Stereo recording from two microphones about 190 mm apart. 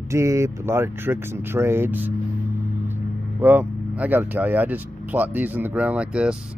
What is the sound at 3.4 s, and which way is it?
Speech, 10° right (ahead or behind).